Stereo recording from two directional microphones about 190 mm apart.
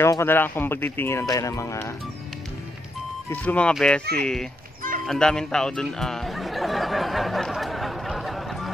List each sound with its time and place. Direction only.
0.0 s speech: 15° left (ahead or behind)
3.3 s speech: 5° left (ahead or behind)
5.0 s a sound: 5° left (ahead or behind)